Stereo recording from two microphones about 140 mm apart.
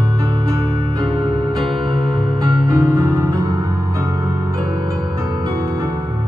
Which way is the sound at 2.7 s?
25° right (ahead or behind).